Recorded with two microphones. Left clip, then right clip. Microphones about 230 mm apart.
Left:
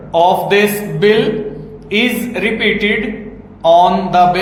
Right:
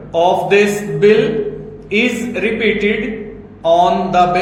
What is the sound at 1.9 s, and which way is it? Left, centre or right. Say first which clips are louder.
Speech: left 1 dB; left.